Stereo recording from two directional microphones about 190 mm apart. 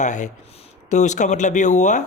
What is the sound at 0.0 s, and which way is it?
Speech, 40° left (ahead or behind).